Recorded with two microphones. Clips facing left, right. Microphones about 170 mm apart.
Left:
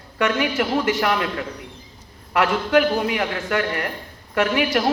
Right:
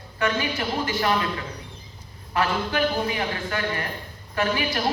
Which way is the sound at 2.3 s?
80° left.